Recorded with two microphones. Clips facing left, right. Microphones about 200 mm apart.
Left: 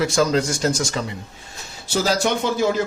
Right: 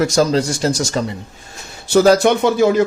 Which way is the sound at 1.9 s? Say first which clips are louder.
Right 9 dB; 60° right (ahead or behind).